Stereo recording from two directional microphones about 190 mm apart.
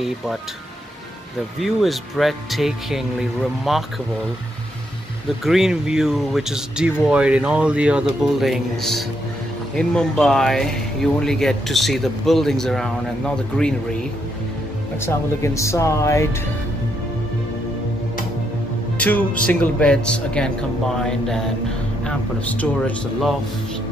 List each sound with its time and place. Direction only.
1.6 s speech: centre (ahead or behind)
5.4 s speech: centre (ahead or behind)
15.0 s speech: 15° left (ahead or behind)
18.9 s speech: 5° left (ahead or behind)
22.0 s speech: 10° left (ahead or behind)